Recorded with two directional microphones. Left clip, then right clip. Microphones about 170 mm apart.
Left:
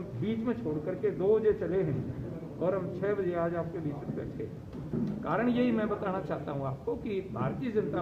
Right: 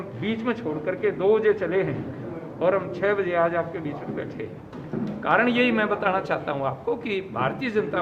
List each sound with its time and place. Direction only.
0.3 s a man's voice: 15° right (ahead or behind)
5.2 s a man's voice: 20° right (ahead or behind)